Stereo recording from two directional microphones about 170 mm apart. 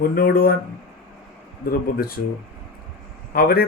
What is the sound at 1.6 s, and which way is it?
Speech, 60° left (ahead or behind).